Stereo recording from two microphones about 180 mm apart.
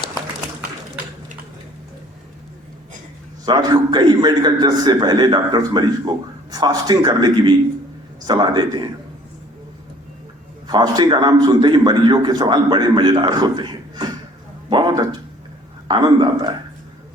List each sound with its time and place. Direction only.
3.4 s a man's voice: 25° right (ahead or behind)
10.7 s a man's voice: 25° right (ahead or behind)
14.7 s a sound: 25° right (ahead or behind)
15.9 s a man's voice: 25° right (ahead or behind)